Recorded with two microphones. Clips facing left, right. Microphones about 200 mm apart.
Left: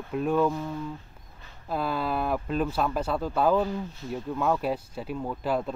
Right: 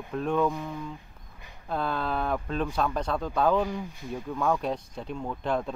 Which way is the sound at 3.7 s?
15° right (ahead or behind).